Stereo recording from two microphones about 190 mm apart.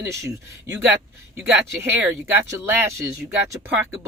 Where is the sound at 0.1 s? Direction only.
15° right (ahead or behind).